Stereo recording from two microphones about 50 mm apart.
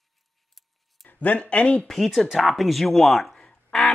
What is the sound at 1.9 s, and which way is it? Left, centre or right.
Speech, centre.